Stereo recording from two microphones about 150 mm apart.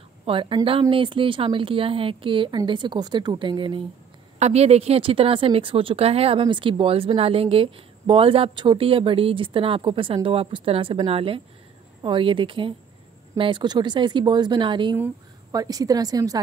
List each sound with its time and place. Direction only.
0.2 s a woman's voice: 35° right (ahead or behind)
4.4 s a woman's voice: 45° right (ahead or behind); by 16.3 s 25° right (ahead or behind)